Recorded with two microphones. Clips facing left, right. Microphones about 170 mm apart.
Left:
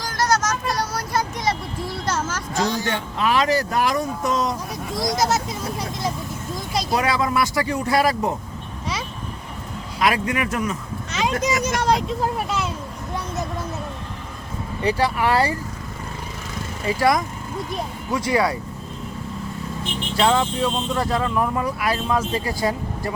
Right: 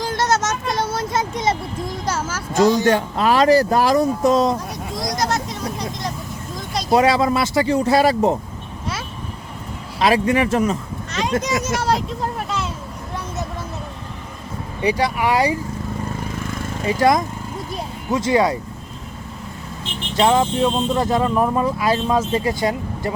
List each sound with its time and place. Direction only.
0.0 s a sound: 25° right (ahead or behind)
2.0 s speech: 10° right (ahead or behind)
2.8 s speech: 40° right (ahead or behind)
4.9 s speech: 5° left (ahead or behind)
6.9 s speech: 30° right (ahead or behind)
10.0 s speech: 30° right (ahead or behind)
11.1 s a child's voice: centre (ahead or behind)
14.8 s speech: 15° right (ahead or behind)
16.8 s speech: 20° right (ahead or behind)
20.1 s speech: 20° right (ahead or behind)